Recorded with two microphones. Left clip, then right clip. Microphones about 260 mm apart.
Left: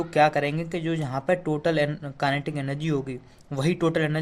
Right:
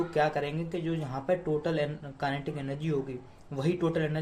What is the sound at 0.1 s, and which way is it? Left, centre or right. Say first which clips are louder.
Speech: left 12 dB; left.